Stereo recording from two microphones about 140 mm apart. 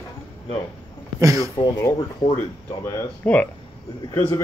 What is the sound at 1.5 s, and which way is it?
Speech, 25° left (ahead or behind).